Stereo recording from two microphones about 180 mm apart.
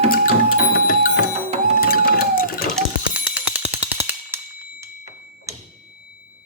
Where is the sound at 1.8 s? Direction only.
55° left (ahead or behind).